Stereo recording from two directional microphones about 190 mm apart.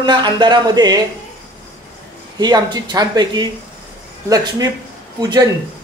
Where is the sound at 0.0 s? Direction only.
25° right (ahead or behind).